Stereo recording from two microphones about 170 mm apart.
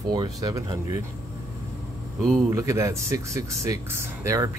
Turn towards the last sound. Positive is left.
turn(degrees=-15)  # may be behind; listen again after turning